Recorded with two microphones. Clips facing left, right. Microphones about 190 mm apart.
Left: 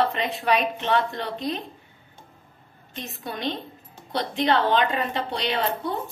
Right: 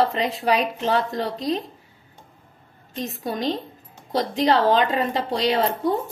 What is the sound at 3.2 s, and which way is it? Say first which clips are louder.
A woman's voice: right 4 dB; 40° right (ahead or behind).